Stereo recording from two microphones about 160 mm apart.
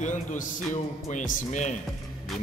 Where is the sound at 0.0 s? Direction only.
50° left (ahead or behind).